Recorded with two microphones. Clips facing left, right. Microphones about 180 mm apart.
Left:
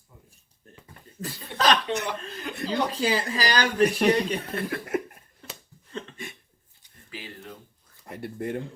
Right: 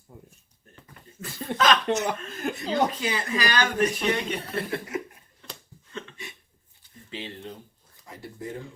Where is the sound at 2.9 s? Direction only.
30° left (ahead or behind).